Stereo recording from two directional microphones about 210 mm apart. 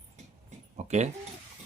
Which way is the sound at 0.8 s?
30° right (ahead or behind).